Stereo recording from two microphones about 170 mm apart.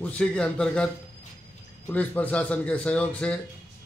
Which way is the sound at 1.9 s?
10° left (ahead or behind).